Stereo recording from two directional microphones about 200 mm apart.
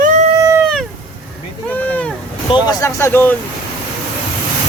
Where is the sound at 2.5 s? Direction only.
20° left (ahead or behind).